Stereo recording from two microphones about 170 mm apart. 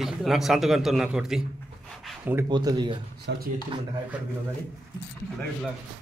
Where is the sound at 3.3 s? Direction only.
85° right.